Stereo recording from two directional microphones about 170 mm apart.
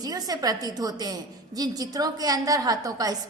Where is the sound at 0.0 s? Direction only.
20° right (ahead or behind).